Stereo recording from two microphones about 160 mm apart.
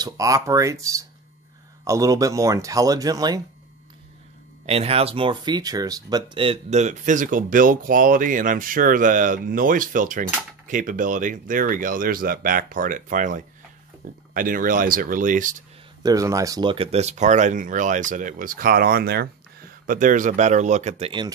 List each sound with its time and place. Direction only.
0.0 s speech: 20° right (ahead or behind)
4.6 s speech: 40° right (ahead or behind); by 15.5 s 55° right (ahead or behind)
16.0 s speech: 20° right (ahead or behind)
16.7 s speech: 40° right (ahead or behind)